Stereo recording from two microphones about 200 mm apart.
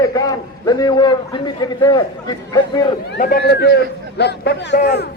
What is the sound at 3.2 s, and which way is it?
Speech, 45° left (ahead or behind).